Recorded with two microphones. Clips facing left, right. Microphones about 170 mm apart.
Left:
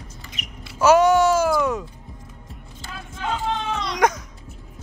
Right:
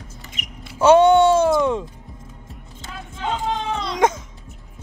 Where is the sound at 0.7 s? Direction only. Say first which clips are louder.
Right 3 dB; 30° right (ahead or behind).